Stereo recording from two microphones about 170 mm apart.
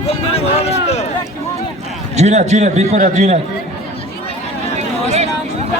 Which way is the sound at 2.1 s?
40° right (ahead or behind).